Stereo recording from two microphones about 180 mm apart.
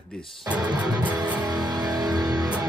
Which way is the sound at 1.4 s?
20° right (ahead or behind).